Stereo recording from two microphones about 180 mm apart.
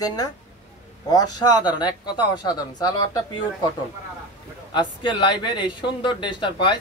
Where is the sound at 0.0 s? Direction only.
20° left (ahead or behind).